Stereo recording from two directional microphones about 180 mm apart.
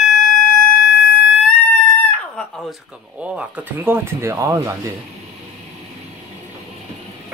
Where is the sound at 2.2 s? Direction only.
5° left (ahead or behind).